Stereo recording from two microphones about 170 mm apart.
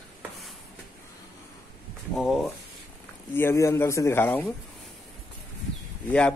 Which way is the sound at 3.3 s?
15° left (ahead or behind).